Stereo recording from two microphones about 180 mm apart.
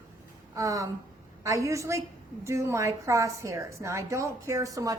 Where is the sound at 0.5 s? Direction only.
20° right (ahead or behind).